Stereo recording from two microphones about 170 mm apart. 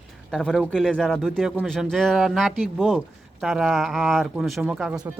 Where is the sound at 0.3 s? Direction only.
Centre (ahead or behind).